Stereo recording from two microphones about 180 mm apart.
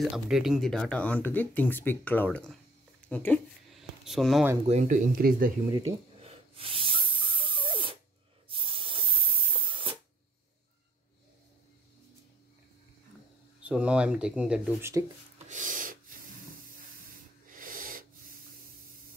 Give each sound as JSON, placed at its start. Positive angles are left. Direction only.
{"t": 0.0, "sound": "speech", "side_deg": 0}
{"t": 4.6, "sound": "speech", "side_deg": -40}
{"t": 5.7, "sound": "speech", "side_deg": -20}
{"t": 6.2, "sound": "a sound", "side_deg": -30}
{"t": 8.5, "sound": "spray", "side_deg": -30}
{"t": 13.6, "sound": "speech", "side_deg": -5}
{"t": 15.4, "sound": "filing", "side_deg": -45}
{"t": 17.5, "sound": "snort", "side_deg": -50}